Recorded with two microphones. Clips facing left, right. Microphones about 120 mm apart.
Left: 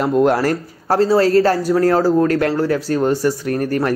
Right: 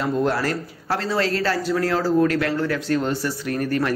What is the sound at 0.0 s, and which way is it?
Speech, 55° left (ahead or behind).